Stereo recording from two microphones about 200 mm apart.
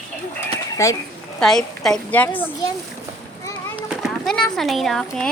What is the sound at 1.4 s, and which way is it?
A woman's voice, centre (ahead or behind).